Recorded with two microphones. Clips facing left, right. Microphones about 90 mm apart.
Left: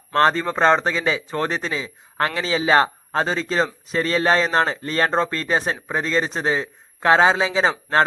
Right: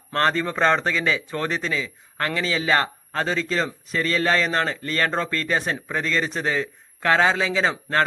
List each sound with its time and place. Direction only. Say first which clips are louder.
0.1 s a man's voice: left 4 dB; 25° left (ahead or behind)